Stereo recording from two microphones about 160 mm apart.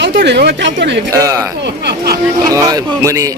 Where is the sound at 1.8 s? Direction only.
80° right.